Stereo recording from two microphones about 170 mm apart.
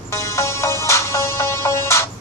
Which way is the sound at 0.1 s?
15° left (ahead or behind).